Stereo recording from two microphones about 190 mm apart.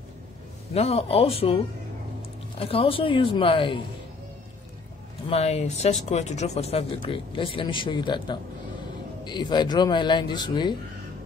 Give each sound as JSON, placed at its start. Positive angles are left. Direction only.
{"t": 0.7, "sound": "speech", "side_deg": 30}
{"t": 2.6, "sound": "speech", "side_deg": 30}
{"t": 5.3, "sound": "speech", "side_deg": 35}